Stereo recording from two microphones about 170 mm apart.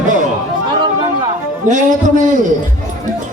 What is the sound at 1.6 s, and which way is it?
Speech, 50° right (ahead or behind).